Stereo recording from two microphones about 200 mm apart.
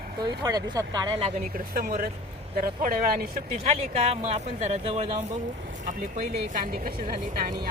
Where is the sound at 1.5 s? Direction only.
45° right (ahead or behind).